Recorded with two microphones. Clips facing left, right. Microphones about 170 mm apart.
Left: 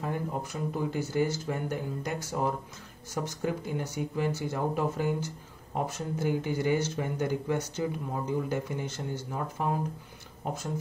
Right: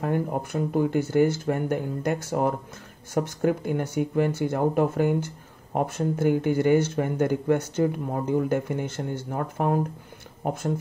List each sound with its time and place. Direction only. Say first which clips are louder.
0.0 s speech: right 7 dB; 55° right (ahead or behind)